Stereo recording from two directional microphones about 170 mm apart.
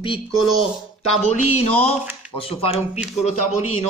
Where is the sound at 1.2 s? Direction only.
40° left (ahead or behind).